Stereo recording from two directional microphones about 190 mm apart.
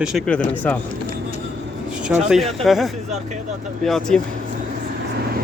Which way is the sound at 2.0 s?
5° right (ahead or behind).